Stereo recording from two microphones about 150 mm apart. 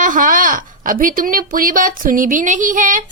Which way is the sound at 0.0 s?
60° right (ahead or behind).